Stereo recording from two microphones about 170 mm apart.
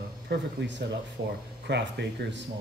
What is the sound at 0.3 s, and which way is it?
Speech, 90° right.